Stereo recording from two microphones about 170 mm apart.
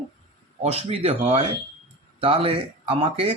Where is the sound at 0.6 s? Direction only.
35° right (ahead or behind).